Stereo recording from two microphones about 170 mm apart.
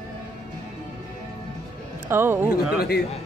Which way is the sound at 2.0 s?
15° right (ahead or behind).